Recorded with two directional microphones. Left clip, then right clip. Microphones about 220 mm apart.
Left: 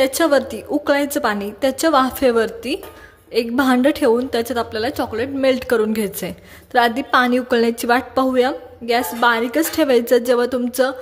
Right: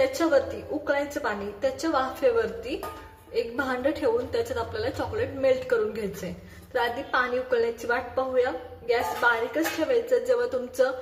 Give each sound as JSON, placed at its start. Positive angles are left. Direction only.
{"t": 0.0, "sound": "a woman's voice", "side_deg": 45}